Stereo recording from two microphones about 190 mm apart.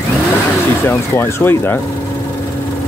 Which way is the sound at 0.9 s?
10° left (ahead or behind).